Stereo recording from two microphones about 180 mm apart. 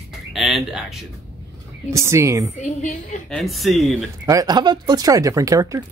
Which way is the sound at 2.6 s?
40° left (ahead or behind).